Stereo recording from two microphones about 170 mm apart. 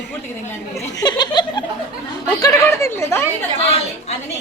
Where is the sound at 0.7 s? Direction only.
20° left (ahead or behind).